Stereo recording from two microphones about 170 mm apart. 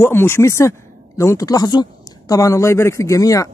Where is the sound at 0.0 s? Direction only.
15° left (ahead or behind).